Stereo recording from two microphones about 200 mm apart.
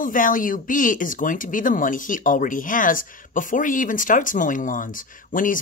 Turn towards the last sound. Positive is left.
turn(degrees=40)  # may be behind; listen again after turning